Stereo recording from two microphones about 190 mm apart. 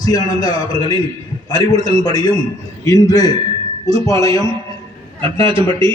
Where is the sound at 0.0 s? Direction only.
20° left (ahead or behind).